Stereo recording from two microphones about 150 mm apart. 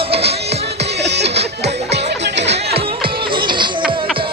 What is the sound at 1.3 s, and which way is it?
Music, 90° right.